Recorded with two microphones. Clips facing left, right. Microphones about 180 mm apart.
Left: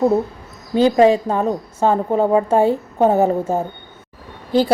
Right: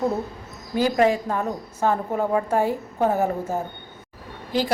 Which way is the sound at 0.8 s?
25° left (ahead or behind).